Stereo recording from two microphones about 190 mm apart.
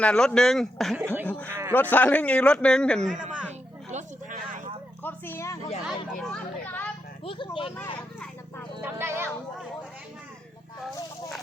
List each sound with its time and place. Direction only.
0.0 s speech: 5° left (ahead or behind)
1.0 s speech: 10° right (ahead or behind)
1.3 s a man's voice: 10° left (ahead or behind)
3.9 s a sound: 40° right (ahead or behind)
5.0 s a sound: 10° left (ahead or behind)
5.6 s speech: 35° left (ahead or behind)
6.1 s children playing: centre (ahead or behind)
7.3 s speech: 25° left (ahead or behind)
7.9 s vehicle: 5° left (ahead or behind)
8.8 s speech: 10° right (ahead or behind)